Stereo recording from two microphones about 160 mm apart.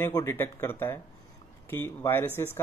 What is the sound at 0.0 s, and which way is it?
Speech, 15° left (ahead or behind).